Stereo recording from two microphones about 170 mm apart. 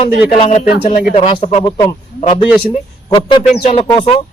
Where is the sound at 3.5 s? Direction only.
40° left (ahead or behind).